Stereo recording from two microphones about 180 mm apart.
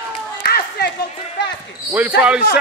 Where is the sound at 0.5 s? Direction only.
60° left (ahead or behind).